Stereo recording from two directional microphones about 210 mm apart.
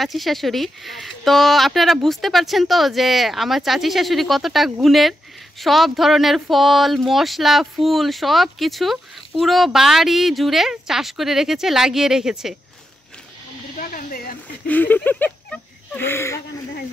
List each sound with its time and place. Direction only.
0.0 s speech: centre (ahead or behind)
13.7 s speech: 40° left (ahead or behind)
14.7 s speech: 10° left (ahead or behind)